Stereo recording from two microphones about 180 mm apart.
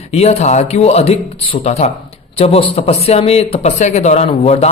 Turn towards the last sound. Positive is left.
turn(degrees=35)  # may be behind; listen again after turning